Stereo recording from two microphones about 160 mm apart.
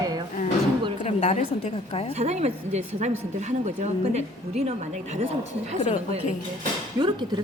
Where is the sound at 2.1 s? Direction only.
45° right (ahead or behind).